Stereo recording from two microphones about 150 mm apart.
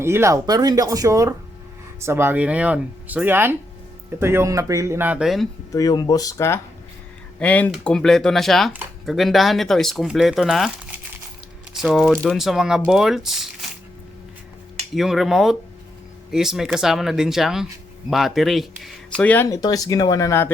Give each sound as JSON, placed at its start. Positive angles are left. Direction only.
{"t": 0.0, "sound": "speech", "side_deg": -15}
{"t": 5.7, "sound": "speech", "side_deg": 25}
{"t": 14.9, "sound": "speech", "side_deg": 0}
{"t": 19.5, "sound": "speech", "side_deg": 25}